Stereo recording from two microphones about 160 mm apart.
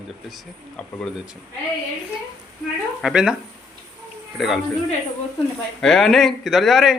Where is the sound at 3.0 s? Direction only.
5° right (ahead or behind).